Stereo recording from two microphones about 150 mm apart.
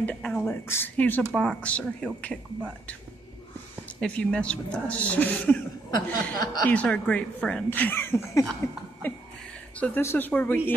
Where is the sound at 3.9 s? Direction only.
5° left (ahead or behind).